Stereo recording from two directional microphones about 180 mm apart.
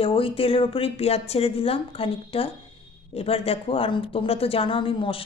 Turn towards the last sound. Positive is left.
turn(degrees=30)  # may be behind; listen again after turning